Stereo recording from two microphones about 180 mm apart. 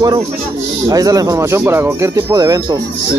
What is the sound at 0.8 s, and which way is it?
Speech, 20° right (ahead or behind).